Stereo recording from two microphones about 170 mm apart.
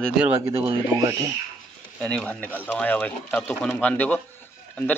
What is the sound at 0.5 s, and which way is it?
Speech, 30° right (ahead or behind).